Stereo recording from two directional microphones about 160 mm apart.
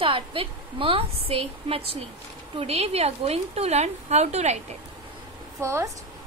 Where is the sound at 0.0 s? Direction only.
35° right (ahead or behind).